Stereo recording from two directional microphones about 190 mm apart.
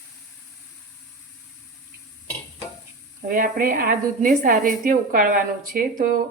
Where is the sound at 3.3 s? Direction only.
45° right (ahead or behind).